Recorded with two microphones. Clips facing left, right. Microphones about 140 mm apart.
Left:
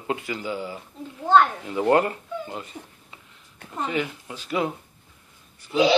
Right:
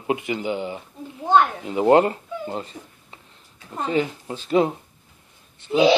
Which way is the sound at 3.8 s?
30° right (ahead or behind).